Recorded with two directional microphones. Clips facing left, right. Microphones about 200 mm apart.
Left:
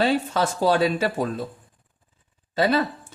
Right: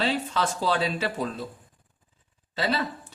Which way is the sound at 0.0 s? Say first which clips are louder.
Left 5 dB; 45° left (ahead or behind).